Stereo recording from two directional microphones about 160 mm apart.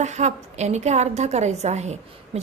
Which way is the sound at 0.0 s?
45° right (ahead or behind).